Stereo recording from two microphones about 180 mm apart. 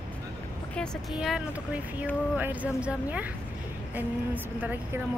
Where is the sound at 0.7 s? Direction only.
Centre (ahead or behind).